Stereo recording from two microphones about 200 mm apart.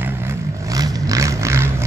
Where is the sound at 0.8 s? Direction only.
15° right (ahead or behind).